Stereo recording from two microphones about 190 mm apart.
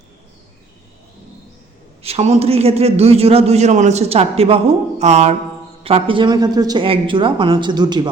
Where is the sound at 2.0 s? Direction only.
35° right (ahead or behind).